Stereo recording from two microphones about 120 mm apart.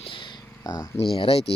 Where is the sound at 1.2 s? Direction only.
55° left (ahead or behind).